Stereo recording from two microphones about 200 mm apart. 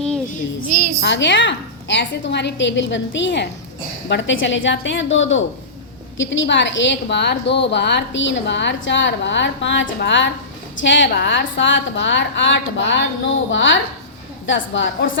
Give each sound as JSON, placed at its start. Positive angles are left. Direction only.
{"t": 0.9, "sound": "a woman's voice", "side_deg": 60}